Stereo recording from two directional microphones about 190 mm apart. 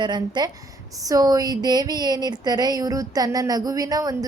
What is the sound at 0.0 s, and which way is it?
Speech, 25° right (ahead or behind).